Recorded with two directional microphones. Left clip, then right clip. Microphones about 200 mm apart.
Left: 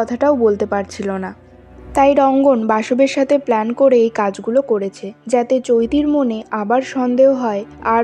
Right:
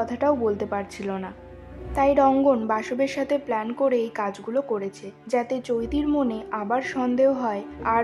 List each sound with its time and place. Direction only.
0.0 s a woman's voice: 30° left (ahead or behind)